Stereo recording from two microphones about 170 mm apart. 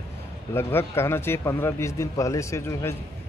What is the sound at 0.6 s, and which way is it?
Speech, 15° left (ahead or behind).